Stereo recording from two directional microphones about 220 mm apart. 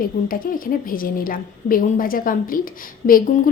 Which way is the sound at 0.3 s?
40° left (ahead or behind).